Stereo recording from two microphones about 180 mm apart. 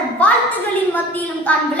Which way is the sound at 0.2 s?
10° left (ahead or behind).